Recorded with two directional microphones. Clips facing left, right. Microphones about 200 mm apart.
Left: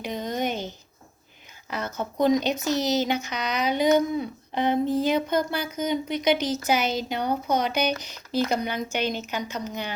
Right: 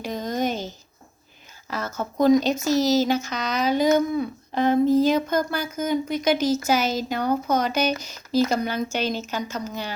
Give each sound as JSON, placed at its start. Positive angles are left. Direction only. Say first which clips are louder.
{"t": 0.0, "sound": "speech", "louder": "right 2 dB", "side_deg": 15}
{"t": 1.7, "sound": "speech", "louder": "right 1 dB", "side_deg": 15}